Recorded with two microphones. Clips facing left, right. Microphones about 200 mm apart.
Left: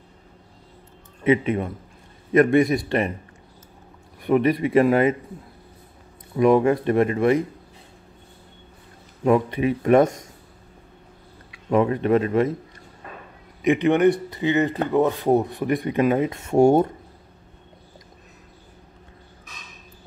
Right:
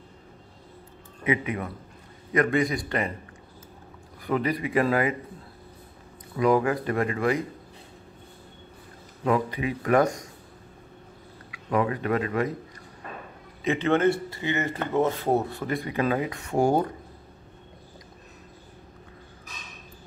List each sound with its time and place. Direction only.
1.2 s speech: 25° left (ahead or behind)
4.2 s speech: 20° left (ahead or behind)
6.3 s speech: 25° left (ahead or behind)
9.2 s speech: 25° left (ahead or behind)
11.5 s speech: 25° left (ahead or behind)
13.7 s speech: 15° left (ahead or behind)